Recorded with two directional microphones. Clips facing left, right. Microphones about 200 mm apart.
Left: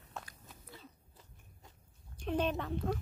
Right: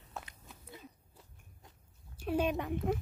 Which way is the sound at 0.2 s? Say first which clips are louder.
Right 1 dB; 25° right (ahead or behind).